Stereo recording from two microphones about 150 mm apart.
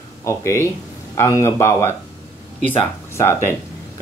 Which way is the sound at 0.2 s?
20° left (ahead or behind).